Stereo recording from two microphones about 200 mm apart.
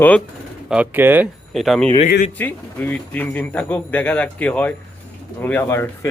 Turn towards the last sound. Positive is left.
turn(degrees=10)  # may be behind; listen again after turning